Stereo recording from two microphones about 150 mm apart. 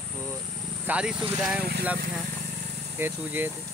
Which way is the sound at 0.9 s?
5° right (ahead or behind).